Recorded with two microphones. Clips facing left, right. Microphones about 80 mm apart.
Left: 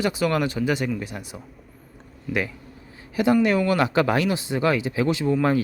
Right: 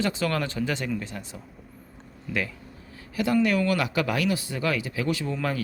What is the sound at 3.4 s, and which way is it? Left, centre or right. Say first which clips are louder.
Speech: left 4 dB; left.